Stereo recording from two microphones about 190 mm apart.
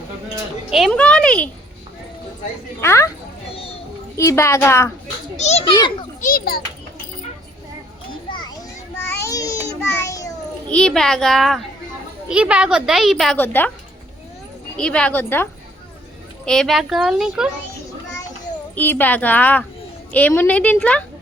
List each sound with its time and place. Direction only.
0.7 s a woman's voice: centre (ahead or behind)
2.8 s a woman's voice: 15° left (ahead or behind)
4.3 s a woman's voice: 15° left (ahead or behind)
5.4 s a child's voice: 35° left (ahead or behind)
6.2 s a child's voice: 50° left (ahead or behind)
8.3 s children playing: 25° left (ahead or behind)
9.2 s a sound: 20° left (ahead or behind)
10.7 s a woman's voice: 5° left (ahead or behind)
14.8 s a woman's voice: 5° left (ahead or behind)
16.5 s a woman's voice: centre (ahead or behind)
18.8 s a woman's voice: 10° left (ahead or behind)